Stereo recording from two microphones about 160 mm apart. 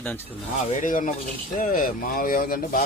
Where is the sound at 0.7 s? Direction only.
55° left (ahead or behind).